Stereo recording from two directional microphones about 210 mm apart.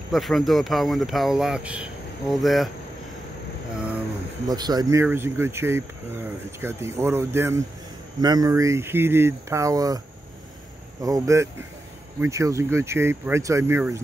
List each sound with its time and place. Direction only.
0.1 s speech: centre (ahead or behind)
4.5 s speech: 20° right (ahead or behind)